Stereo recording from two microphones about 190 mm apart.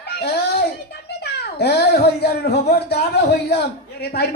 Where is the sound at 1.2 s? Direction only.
60° left (ahead or behind).